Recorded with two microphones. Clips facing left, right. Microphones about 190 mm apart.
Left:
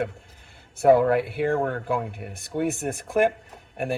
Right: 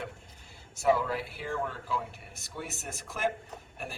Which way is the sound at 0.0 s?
60° left (ahead or behind).